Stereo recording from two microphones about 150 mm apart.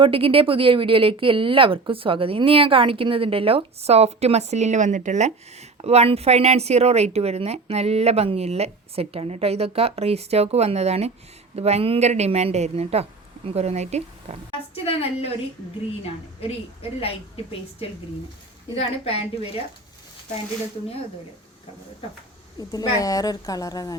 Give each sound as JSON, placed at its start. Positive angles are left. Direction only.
{"t": 0.0, "sound": "speech", "side_deg": -35}
{"t": 14.8, "sound": "a woman's voice", "side_deg": 40}
{"t": 17.0, "sound": "a woman's voice", "side_deg": 40}
{"t": 22.6, "sound": "a woman's voice", "side_deg": 25}